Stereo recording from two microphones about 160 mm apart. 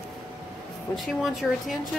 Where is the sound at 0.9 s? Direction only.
Centre (ahead or behind).